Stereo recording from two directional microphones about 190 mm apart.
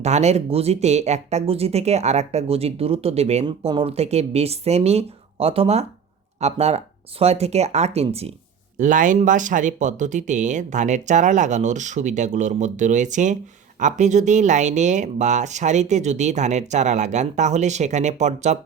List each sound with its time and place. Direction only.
0.0 s speech: 35° right (ahead or behind)
8.8 s speech: 45° right (ahead or behind)